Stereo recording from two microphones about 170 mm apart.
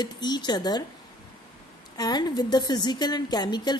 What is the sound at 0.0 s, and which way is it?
Speech, 25° left (ahead or behind).